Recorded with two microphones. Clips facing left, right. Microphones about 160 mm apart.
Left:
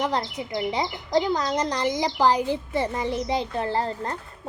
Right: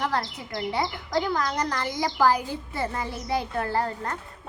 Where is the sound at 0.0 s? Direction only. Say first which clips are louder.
Left 2 dB; 20° left (ahead or behind).